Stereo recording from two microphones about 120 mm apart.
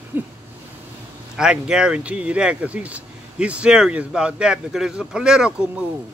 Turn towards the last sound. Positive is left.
turn(degrees=-10)  # may be behind; listen again after turning